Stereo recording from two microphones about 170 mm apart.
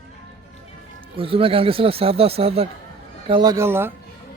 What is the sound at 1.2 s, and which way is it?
Speech, 35° right (ahead or behind).